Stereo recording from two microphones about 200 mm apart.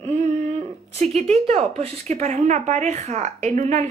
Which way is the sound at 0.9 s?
30° right (ahead or behind).